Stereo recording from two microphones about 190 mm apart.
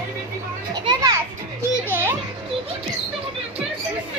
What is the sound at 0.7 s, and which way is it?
Children playing, 20° right (ahead or behind).